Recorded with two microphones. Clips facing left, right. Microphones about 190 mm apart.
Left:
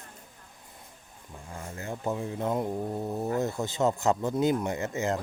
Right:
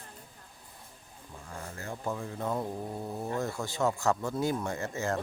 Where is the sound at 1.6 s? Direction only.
20° left (ahead or behind).